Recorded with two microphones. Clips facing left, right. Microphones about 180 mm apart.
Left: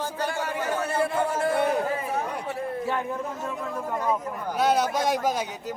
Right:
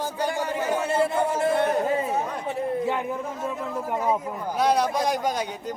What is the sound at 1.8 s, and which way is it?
Chatter, 25° right (ahead or behind).